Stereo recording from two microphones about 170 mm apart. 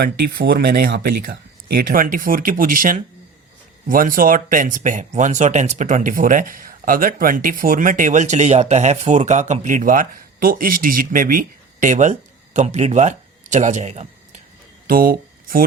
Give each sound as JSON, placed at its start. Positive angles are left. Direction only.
{"t": 0.0, "sound": "speech", "side_deg": -65}
{"t": 14.8, "sound": "speech", "side_deg": -55}